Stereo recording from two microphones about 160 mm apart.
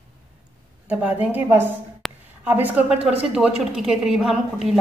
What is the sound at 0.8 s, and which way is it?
Speech, 10° right (ahead or behind).